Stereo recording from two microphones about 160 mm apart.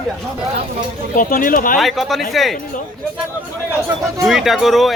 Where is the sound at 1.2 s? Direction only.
60° left (ahead or behind).